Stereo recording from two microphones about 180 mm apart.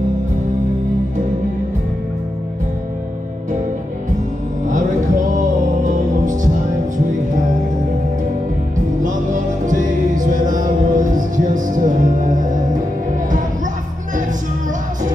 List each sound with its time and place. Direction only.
5.9 s music: 45° right (ahead or behind)
9.0 s music: 45° right (ahead or behind)